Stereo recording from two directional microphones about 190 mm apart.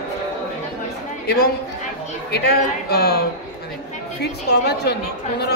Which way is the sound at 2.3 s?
55° left (ahead or behind).